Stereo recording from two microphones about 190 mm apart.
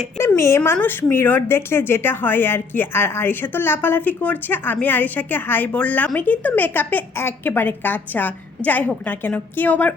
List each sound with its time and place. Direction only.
0.2 s a woman's voice: 15° left (ahead or behind)